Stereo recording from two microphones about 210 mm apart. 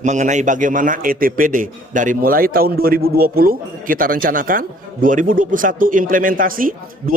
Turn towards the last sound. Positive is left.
turn(degrees=-40)  # may be behind; listen again after turning